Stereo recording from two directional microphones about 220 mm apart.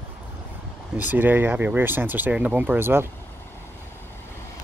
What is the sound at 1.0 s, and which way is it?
Speech, 10° right (ahead or behind).